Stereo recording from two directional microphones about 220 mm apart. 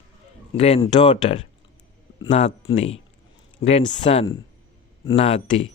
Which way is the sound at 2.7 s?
25° left (ahead or behind).